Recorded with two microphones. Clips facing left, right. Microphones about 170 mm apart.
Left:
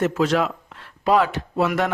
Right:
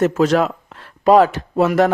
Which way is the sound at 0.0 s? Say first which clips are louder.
Right 5 dB; 40° right (ahead or behind).